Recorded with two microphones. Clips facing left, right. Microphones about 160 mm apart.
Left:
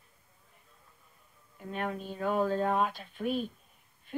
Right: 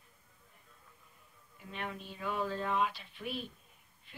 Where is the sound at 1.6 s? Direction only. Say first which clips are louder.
Left 7 dB; 45° left (ahead or behind).